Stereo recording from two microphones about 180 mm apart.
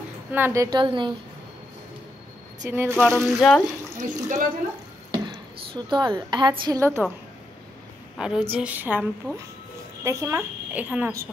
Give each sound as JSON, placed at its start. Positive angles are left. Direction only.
{"t": 0.3, "sound": "a woman's voice", "side_deg": -15}
{"t": 2.6, "sound": "speech", "side_deg": -15}
{"t": 3.0, "sound": "speech", "side_deg": 5}
{"t": 4.0, "sound": "speech", "side_deg": -45}
{"t": 5.1, "sound": "speech", "side_deg": -25}
{"t": 8.2, "sound": "speech", "side_deg": -5}
{"t": 10.0, "sound": "speech", "side_deg": -15}